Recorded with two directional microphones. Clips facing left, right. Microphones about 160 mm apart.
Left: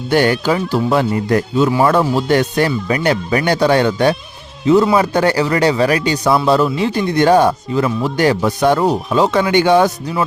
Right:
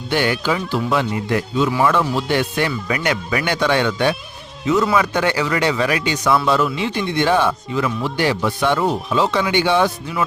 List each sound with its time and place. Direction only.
0.1 s speech: 45° left (ahead or behind)